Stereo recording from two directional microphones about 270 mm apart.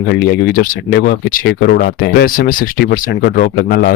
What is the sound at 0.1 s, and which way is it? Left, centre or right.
Speech, left.